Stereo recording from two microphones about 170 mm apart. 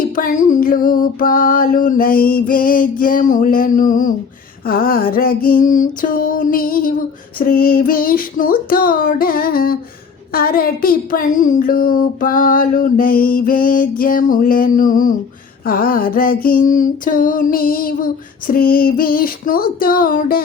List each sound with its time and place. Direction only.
0.2 s speech: 50° left (ahead or behind)
3.0 s a sound: 55° left (ahead or behind)
4.6 s speech: 60° left (ahead or behind)